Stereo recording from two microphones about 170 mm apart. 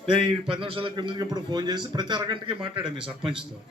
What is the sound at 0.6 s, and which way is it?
A man's voice, 30° right (ahead or behind).